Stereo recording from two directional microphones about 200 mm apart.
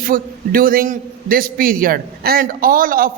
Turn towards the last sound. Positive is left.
turn(degrees=-45)  # may be behind; listen again after turning